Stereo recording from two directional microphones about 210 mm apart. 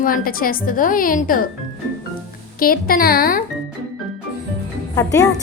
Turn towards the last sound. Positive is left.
turn(degrees=15)  # may be behind; listen again after turning